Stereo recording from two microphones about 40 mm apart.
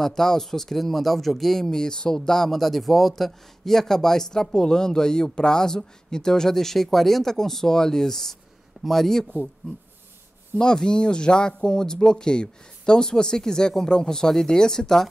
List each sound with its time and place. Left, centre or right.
0.0 s speech: centre
10.6 s speech: left